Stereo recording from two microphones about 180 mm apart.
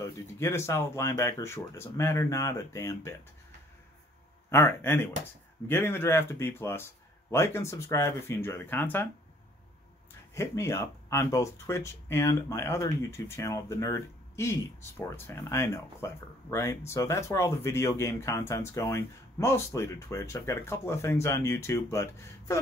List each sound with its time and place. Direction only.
0.0 s speech: 15° left (ahead or behind)
4.5 s speech: 15° left (ahead or behind)
10.3 s speech: 15° left (ahead or behind)